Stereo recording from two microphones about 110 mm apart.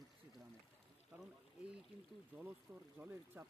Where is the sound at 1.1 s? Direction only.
10° right (ahead or behind).